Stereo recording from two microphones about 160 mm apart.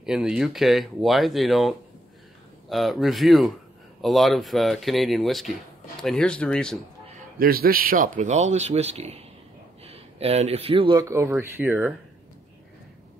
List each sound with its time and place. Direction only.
0.0 s speech: 5° right (ahead or behind)
7.3 s a man's voice: 65° right (ahead or behind); by 11.0 s 35° right (ahead or behind)
11.0 s speech: 20° right (ahead or behind)